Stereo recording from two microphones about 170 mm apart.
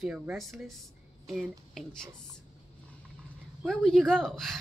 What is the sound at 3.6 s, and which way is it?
A woman's voice, 5° left (ahead or behind).